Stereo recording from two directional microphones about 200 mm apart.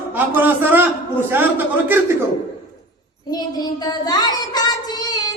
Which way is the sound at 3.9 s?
20° left (ahead or behind).